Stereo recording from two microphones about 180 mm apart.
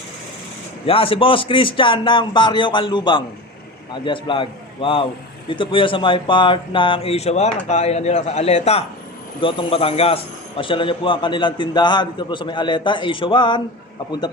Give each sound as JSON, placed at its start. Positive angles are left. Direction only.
{"t": 0.9, "sound": "a man's voice", "side_deg": 30}